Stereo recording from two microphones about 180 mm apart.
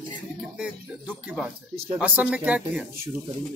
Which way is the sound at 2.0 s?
10° right (ahead or behind).